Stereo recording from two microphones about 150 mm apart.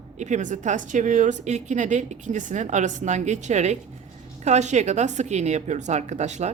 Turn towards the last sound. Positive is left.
turn(degrees=-50)  # may be behind; listen again after turning